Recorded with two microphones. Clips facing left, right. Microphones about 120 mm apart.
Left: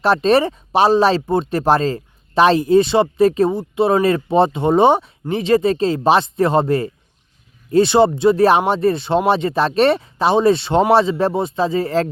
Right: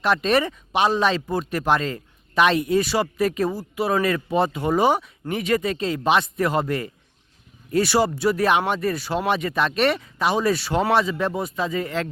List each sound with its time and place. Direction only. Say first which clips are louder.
0.0 s speech: left 6 dB; 30° left (ahead or behind)